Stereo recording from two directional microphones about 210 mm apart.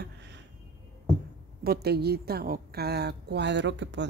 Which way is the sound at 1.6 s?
50° right (ahead or behind).